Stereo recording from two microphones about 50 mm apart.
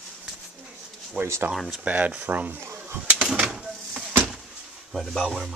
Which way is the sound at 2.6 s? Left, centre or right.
Right.